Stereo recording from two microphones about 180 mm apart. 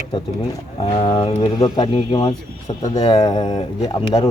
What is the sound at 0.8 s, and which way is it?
Speech, 25° left (ahead or behind).